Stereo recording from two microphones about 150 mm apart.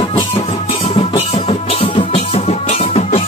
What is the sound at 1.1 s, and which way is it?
Music, 40° left (ahead or behind).